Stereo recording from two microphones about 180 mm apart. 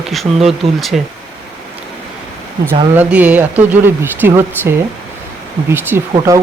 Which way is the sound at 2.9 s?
10° right (ahead or behind).